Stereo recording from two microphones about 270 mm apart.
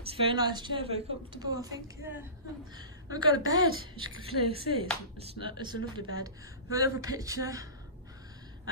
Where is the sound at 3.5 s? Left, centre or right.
Right.